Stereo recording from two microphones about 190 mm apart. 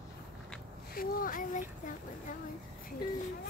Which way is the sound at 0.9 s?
50° left (ahead or behind).